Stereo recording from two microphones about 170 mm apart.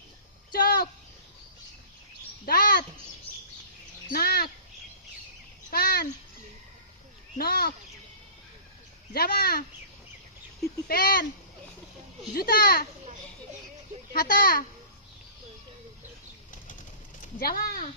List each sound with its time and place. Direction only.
0.5 s a sound: 60° left (ahead or behind)
2.5 s a sound: 60° left (ahead or behind)
4.1 s bird: 65° left (ahead or behind)
5.7 s babbling: 65° left (ahead or behind)
7.3 s a sound: 60° left (ahead or behind)
9.1 s speech: 65° left (ahead or behind)
10.8 s speech: 60° left (ahead or behind)
12.3 s speech: 60° left (ahead or behind)
14.1 s speech: 55° left (ahead or behind)
17.2 s speech: 60° left (ahead or behind)